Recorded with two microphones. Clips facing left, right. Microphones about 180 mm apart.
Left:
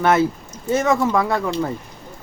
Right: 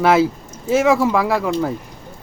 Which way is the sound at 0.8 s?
5° right (ahead or behind).